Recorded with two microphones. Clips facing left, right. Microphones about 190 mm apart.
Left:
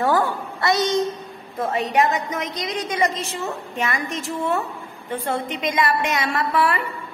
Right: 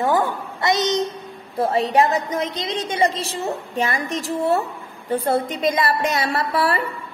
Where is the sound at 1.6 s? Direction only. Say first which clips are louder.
Right 3 dB; 30° right (ahead or behind).